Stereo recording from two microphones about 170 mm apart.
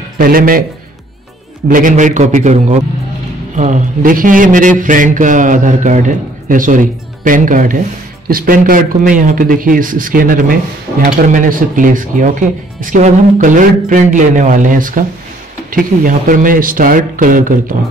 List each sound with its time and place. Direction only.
0.2 s a man's voice: 55° right (ahead or behind)
1.7 s a man's voice: 50° right (ahead or behind)